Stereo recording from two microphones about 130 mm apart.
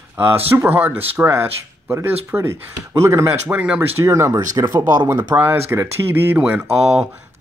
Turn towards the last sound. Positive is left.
turn(degrees=-10)  # may be behind; listen again after turning